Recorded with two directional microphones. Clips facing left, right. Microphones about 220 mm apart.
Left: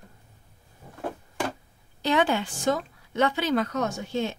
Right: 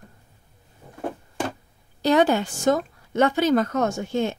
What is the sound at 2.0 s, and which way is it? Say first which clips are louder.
A woman's voice: right 5 dB; 40° right (ahead or behind).